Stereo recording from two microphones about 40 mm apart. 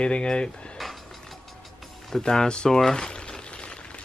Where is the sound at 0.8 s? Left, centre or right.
Centre.